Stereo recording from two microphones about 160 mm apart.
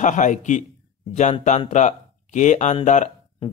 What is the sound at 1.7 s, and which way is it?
Speech, 50° left (ahead or behind).